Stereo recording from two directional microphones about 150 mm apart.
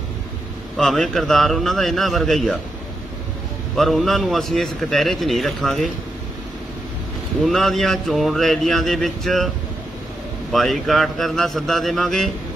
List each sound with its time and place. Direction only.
0.7 s a man's voice: centre (ahead or behind)
3.7 s a man's voice: centre (ahead or behind)
7.4 s a man's voice: centre (ahead or behind)
10.5 s a man's voice: centre (ahead or behind)